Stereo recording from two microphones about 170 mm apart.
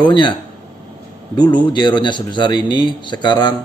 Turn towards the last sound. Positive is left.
turn(degrees=25)  # may be behind; listen again after turning